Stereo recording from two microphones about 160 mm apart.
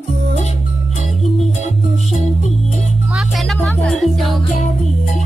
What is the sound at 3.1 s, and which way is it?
Music, centre (ahead or behind).